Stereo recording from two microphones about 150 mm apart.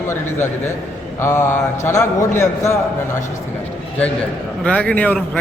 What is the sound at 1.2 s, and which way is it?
A man's voice, 15° left (ahead or behind).